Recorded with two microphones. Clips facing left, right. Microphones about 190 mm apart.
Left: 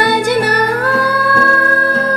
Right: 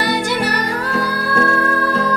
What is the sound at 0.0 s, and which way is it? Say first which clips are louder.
Music: left 5 dB; 55° left (ahead or behind).